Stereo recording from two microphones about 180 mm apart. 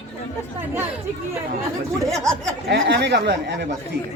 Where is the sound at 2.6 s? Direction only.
65° right (ahead or behind).